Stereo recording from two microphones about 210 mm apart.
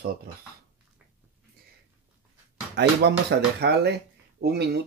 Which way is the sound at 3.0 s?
55° right (ahead or behind).